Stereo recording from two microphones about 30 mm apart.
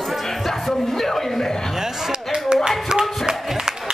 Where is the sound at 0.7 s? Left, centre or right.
Centre.